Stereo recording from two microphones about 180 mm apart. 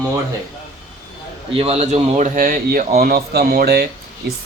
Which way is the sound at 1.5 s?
35° right (ahead or behind).